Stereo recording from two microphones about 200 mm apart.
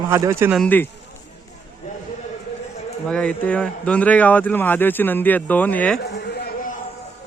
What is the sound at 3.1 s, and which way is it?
Speech, 5° left (ahead or behind).